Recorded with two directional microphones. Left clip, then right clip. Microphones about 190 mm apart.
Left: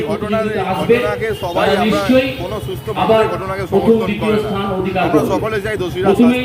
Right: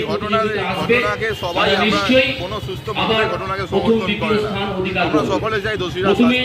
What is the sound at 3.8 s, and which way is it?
A man's voice, 10° left (ahead or behind).